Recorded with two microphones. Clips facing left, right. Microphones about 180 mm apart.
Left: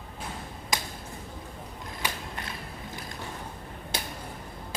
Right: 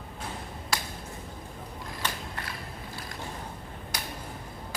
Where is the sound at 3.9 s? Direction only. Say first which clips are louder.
Left 3 dB; 25° left (ahead or behind).